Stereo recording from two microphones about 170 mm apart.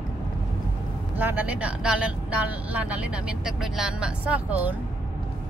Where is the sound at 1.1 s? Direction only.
10° right (ahead or behind).